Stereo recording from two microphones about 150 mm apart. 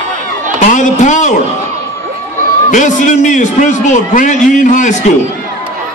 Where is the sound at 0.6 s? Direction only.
55° left (ahead or behind).